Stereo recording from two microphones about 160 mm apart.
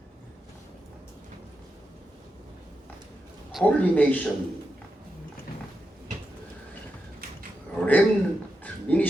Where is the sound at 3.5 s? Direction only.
10° left (ahead or behind).